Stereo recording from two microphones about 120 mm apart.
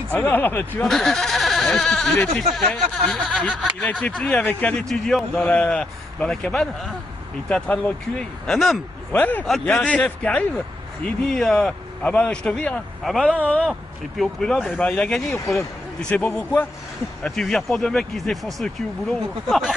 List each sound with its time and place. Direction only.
0.1 s speech: 15° left (ahead or behind)
0.8 s speech: centre (ahead or behind)
4.8 s speech: 5° left (ahead or behind)
13.7 s speech: centre (ahead or behind)